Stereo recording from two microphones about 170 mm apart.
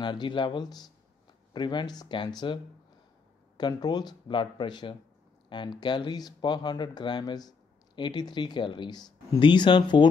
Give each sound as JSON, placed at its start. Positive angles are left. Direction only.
{"t": 0.0, "sound": "speech", "side_deg": 25}